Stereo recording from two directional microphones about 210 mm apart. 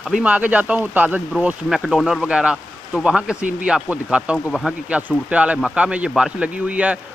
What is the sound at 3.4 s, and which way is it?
Speech, 40° right (ahead or behind).